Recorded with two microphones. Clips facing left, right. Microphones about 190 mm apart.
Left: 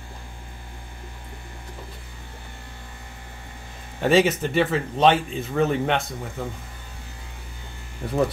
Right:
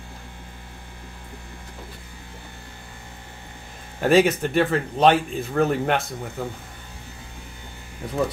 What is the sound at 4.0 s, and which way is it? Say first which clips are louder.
Speech: right 1 dB; centre (ahead or behind).